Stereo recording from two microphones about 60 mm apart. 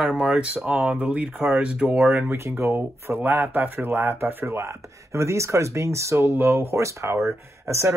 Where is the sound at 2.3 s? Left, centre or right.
Right.